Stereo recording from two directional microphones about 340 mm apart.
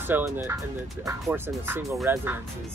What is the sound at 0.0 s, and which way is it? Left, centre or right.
Speech, centre.